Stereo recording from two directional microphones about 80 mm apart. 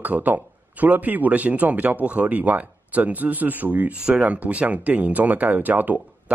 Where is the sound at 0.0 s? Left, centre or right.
Centre.